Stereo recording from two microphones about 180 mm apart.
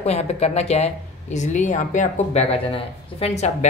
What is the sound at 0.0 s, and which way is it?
Speech, 35° left (ahead or behind).